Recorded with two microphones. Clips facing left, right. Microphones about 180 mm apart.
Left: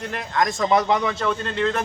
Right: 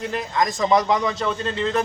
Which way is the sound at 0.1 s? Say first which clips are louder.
Left 2 dB; centre (ahead or behind).